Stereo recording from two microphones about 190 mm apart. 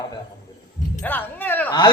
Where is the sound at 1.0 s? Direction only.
10° left (ahead or behind).